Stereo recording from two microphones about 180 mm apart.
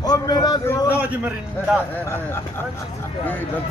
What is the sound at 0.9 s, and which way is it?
Speech, 10° right (ahead or behind).